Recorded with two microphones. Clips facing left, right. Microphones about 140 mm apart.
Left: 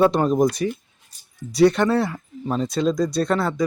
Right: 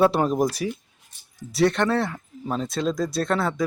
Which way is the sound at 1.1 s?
40° left (ahead or behind).